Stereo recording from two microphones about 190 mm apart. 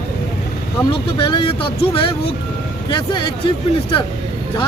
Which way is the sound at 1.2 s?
25° left (ahead or behind).